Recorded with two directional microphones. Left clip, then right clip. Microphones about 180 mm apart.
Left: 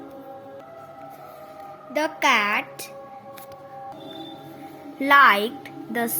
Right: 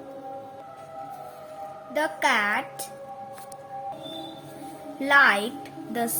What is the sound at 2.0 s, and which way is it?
Speech, 25° left (ahead or behind).